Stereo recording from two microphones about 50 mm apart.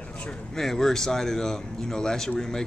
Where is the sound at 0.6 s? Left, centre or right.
Centre.